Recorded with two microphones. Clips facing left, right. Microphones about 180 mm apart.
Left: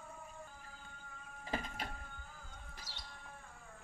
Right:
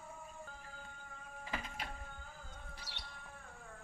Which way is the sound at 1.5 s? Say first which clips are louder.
Left 3 dB; 45° left (ahead or behind).